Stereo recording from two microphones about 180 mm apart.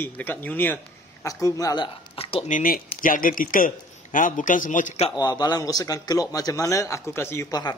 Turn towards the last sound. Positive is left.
turn(degrees=20)  # may be behind; listen again after turning